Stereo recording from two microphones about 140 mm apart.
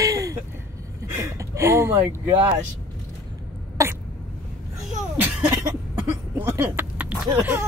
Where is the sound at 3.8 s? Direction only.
20° right (ahead or behind).